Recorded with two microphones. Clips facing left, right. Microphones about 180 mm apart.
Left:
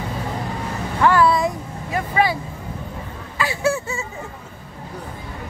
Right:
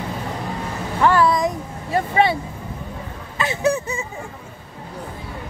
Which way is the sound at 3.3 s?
20° right (ahead or behind).